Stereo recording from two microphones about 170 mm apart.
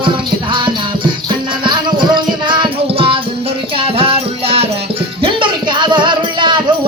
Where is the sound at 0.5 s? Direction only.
30° right (ahead or behind).